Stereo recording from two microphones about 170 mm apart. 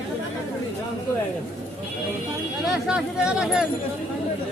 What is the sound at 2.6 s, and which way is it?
Speech, centre (ahead or behind).